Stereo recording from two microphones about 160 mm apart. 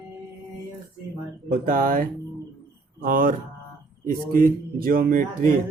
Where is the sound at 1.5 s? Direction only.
60° right (ahead or behind).